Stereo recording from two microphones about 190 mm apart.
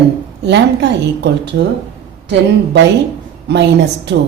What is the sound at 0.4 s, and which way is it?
Speech, 65° right (ahead or behind).